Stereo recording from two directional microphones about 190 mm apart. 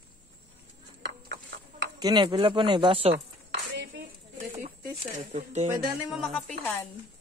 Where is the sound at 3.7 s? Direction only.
50° right (ahead or behind).